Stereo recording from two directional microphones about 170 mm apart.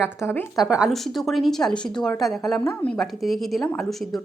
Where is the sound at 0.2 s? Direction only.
15° left (ahead or behind).